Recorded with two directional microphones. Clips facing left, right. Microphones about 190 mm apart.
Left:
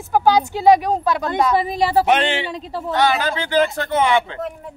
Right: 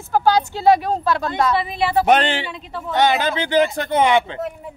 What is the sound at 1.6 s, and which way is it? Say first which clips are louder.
Speech: left 2 dB; 40° left (ahead or behind).